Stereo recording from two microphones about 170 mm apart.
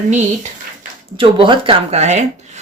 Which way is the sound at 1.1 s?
30° right (ahead or behind).